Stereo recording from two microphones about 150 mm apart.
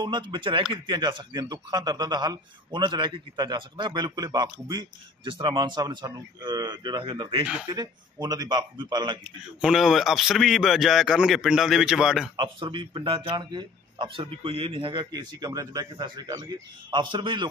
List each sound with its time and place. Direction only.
0.0 s a man's voice: 30° right (ahead or behind)
9.2 s speech: 5° right (ahead or behind)
12.4 s speech: 35° right (ahead or behind)